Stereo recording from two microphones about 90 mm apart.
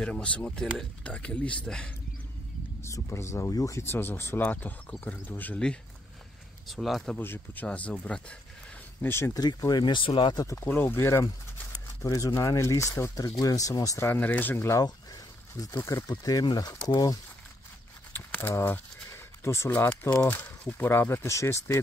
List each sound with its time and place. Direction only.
0.0 s speech: 10° left (ahead or behind)
2.8 s speech: 30° left (ahead or behind); by 5.8 s 15° left (ahead or behind)
6.7 s speech: centre (ahead or behind)
7.2 s speech: 25° left (ahead or behind)
9.0 s speech: 30° left (ahead or behind)
9.3 s speech: 45° left (ahead or behind); by 10.3 s 65° left (ahead or behind)
10.3 s speech: 40° left (ahead or behind)
10.6 s speech: 20° left (ahead or behind); by 14.0 s 40° left (ahead or behind)
14.0 s speech: 20° left (ahead or behind)
14.6 s speech: 35° left (ahead or behind)
16.1 s speech: 45° left (ahead or behind)
18.1 s speech: 25° left (ahead or behind)